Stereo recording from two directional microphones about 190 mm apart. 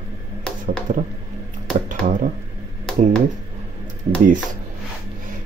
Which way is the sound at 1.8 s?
45° right (ahead or behind).